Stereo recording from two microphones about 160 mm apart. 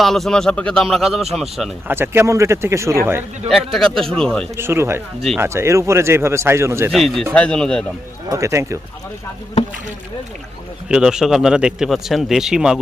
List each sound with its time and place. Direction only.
0.0 s speech: centre (ahead or behind)
1.9 s speech: 15° right (ahead or behind)
3.5 s speech: centre (ahead or behind)
4.5 s speech: 15° right (ahead or behind)
6.9 s speech: centre (ahead or behind)
8.3 s speech: 20° right (ahead or behind)
10.8 s speech: 5° right (ahead or behind)